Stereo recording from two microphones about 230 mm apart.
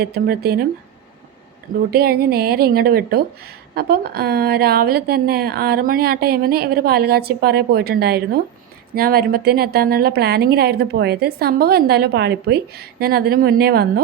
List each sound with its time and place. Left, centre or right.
0.0 s speech: right
1.9 s speech: right